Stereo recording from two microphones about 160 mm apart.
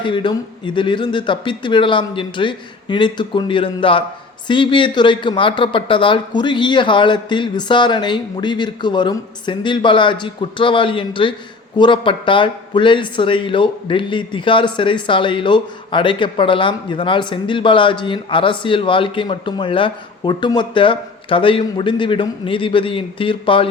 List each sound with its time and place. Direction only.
0.0 s speech: 30° left (ahead or behind)